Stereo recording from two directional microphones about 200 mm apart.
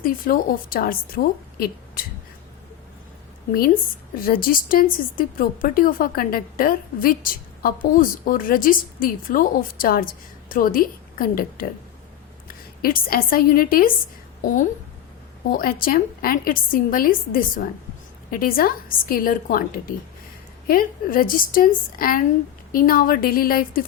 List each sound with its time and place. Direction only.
0.0 s a woman's voice: 45° left (ahead or behind)
4.1 s a woman's voice: 45° left (ahead or behind)
15.5 s a woman's voice: 45° left (ahead or behind)